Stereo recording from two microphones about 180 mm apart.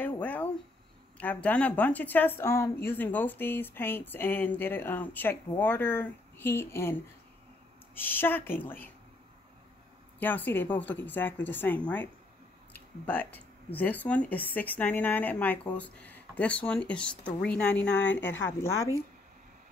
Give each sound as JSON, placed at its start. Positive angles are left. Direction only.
{"t": 0.0, "sound": "a sound", "side_deg": 10}
{"t": 1.1, "sound": "a woman's voice", "side_deg": 10}
{"t": 10.1, "sound": "a woman's voice", "side_deg": 10}
{"t": 17.6, "sound": "speech", "side_deg": 70}
{"t": 18.0, "sound": "a woman's voice", "side_deg": 10}